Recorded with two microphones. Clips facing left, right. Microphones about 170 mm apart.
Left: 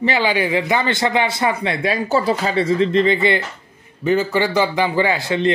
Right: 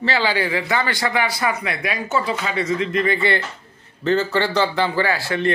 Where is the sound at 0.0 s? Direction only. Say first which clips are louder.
Left 3 dB; 15° left (ahead or behind).